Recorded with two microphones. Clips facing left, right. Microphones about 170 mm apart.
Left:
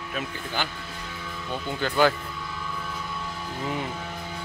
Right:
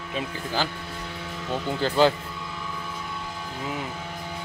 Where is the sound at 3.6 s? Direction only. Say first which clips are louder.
Left 2 dB; 5° right (ahead or behind).